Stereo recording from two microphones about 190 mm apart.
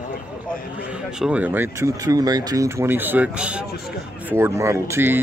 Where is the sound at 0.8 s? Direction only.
5° right (ahead or behind).